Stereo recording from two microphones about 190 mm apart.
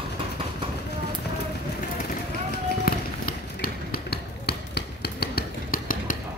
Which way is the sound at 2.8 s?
50° left (ahead or behind).